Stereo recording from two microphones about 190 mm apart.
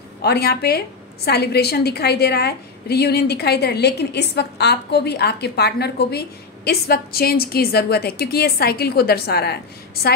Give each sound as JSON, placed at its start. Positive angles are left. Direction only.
{"t": 0.2, "sound": "a woman's voice", "side_deg": 60}